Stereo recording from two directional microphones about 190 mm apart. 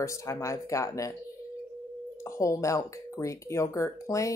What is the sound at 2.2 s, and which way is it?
Speech, 15° left (ahead or behind).